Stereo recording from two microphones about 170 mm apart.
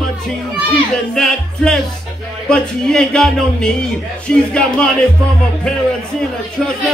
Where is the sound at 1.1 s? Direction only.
5° left (ahead or behind).